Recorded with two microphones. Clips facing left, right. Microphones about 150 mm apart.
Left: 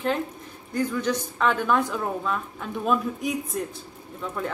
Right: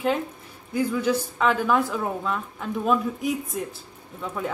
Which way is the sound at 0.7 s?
10° right (ahead or behind).